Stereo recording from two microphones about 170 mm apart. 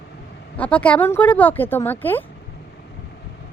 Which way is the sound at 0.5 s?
10° left (ahead or behind).